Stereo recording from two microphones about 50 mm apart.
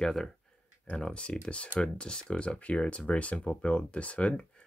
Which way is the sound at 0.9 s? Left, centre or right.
Centre.